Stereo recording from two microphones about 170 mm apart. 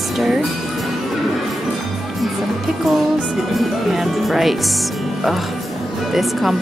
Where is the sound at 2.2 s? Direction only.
Centre (ahead or behind).